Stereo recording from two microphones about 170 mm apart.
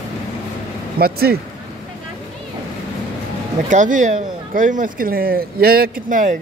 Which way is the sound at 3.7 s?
45° right (ahead or behind).